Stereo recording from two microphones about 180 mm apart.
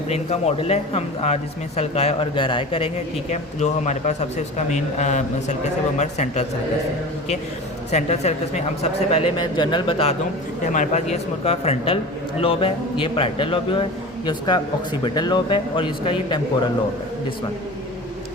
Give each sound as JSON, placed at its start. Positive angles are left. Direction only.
{"t": 0.1, "sound": "a man's voice", "side_deg": 35}
{"t": 7.9, "sound": "a man's voice", "side_deg": 40}
{"t": 10.7, "sound": "a man's voice", "side_deg": 40}